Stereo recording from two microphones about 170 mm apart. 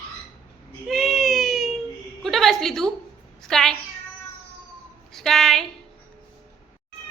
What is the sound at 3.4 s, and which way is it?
Meow, 5° left (ahead or behind).